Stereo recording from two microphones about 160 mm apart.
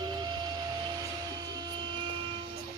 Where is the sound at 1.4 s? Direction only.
25° right (ahead or behind).